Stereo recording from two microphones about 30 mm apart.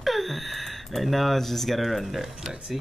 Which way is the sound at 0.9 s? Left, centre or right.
Centre.